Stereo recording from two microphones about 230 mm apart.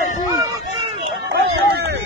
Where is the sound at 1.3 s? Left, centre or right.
Right.